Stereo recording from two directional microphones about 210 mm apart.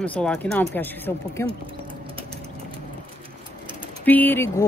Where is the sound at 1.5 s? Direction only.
25° right (ahead or behind).